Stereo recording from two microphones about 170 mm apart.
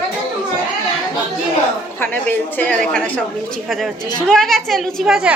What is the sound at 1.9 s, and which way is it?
A woman's voice, 10° left (ahead or behind).